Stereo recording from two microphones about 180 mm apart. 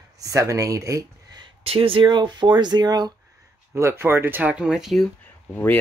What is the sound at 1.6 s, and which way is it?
Speech, 30° right (ahead or behind).